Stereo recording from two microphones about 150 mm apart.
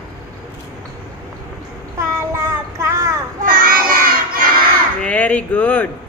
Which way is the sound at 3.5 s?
70° right (ahead or behind).